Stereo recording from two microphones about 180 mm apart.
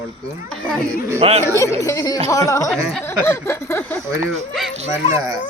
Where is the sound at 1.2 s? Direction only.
30° right (ahead or behind).